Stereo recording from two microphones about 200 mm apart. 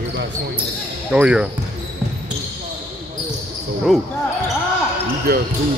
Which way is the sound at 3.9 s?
Centre (ahead or behind).